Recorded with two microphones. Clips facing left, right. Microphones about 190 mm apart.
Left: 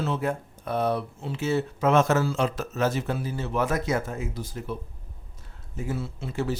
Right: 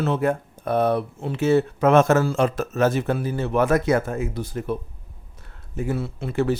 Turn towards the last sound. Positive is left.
turn(degrees=-60)  # may be behind; listen again after turning